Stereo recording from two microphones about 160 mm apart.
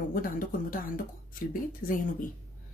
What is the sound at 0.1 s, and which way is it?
Speech, 60° left (ahead or behind).